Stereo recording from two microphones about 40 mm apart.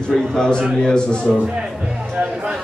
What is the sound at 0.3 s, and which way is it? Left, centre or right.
Speech, centre.